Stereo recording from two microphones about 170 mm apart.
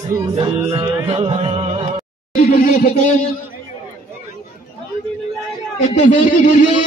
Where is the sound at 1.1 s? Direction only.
35° right (ahead or behind).